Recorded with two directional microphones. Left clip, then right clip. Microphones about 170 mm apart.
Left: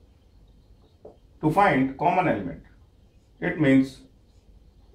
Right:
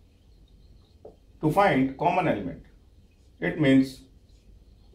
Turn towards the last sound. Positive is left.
turn(degrees=5)  # may be behind; listen again after turning